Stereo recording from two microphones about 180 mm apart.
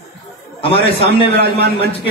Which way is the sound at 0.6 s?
30° left (ahead or behind).